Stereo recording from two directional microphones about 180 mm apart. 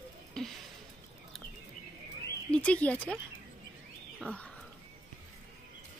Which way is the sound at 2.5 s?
5° left (ahead or behind).